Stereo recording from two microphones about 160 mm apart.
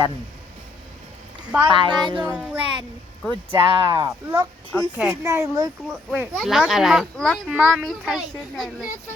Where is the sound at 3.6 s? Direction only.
30° right (ahead or behind).